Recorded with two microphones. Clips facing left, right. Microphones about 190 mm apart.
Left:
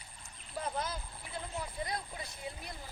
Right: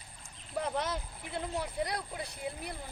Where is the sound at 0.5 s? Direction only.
70° right (ahead or behind).